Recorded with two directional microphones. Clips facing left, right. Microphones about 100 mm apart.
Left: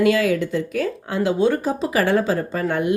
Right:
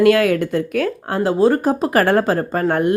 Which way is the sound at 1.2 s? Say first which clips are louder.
Right 4 dB; 40° right (ahead or behind).